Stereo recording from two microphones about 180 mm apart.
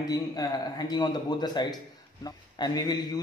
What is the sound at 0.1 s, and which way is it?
A man's voice, 20° left (ahead or behind).